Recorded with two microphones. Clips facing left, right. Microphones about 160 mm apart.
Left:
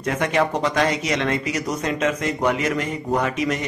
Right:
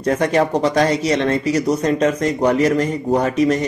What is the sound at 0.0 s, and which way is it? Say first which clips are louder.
Speech: right 5 dB; 35° right (ahead or behind).